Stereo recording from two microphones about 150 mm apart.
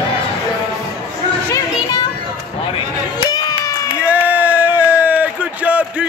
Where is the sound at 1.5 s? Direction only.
25° left (ahead or behind).